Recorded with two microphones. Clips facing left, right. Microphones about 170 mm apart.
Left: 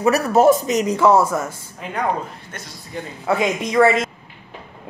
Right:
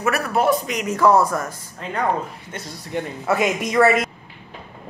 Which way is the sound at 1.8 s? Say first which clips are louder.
Even; 5° left (ahead or behind).